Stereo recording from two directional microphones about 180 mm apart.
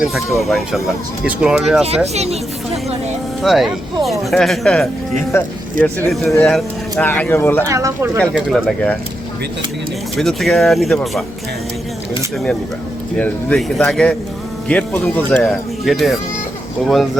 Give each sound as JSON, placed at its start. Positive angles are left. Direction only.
{"t": 0.0, "sound": "speech", "side_deg": 0}
{"t": 2.1, "sound": "speech", "side_deg": -35}
{"t": 3.4, "sound": "speech", "side_deg": 0}
{"t": 5.3, "sound": "speech", "side_deg": 15}
{"t": 7.7, "sound": "speech", "side_deg": -15}
{"t": 8.2, "sound": "speech", "side_deg": 0}
{"t": 10.2, "sound": "speech", "side_deg": 0}
{"t": 13.1, "sound": "speech", "side_deg": 5}